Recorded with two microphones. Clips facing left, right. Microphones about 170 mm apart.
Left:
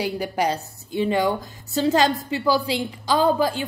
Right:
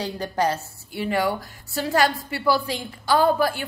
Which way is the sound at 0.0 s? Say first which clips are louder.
Left 1 dB; 10° left (ahead or behind).